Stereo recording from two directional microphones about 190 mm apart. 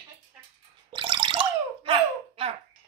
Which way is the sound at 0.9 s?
25° right (ahead or behind).